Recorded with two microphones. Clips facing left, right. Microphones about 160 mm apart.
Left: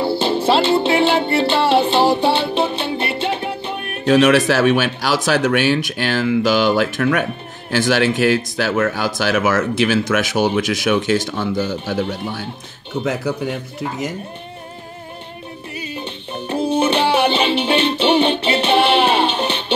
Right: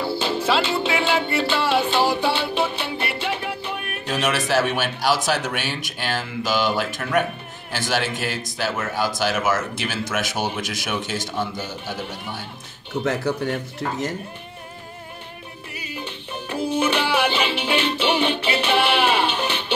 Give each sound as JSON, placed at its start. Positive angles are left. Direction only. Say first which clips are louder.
{"t": 0.0, "sound": "music", "louder": "left 6 dB", "side_deg": 30}
{"t": 4.0, "sound": "speech", "louder": "left 12 dB", "side_deg": 85}
{"t": 13.0, "sound": "speech", "louder": "left 2 dB", "side_deg": 10}
{"t": 15.7, "sound": "music", "louder": "left 4 dB", "side_deg": 25}